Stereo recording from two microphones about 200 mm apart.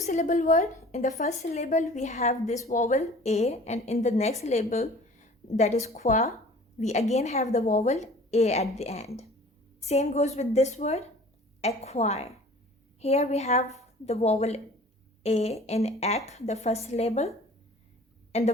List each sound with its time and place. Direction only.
0.0 s a woman's voice: 35° left (ahead or behind)
18.3 s speech: 35° left (ahead or behind)